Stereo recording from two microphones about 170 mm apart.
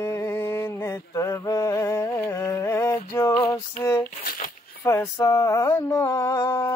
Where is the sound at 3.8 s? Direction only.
15° left (ahead or behind).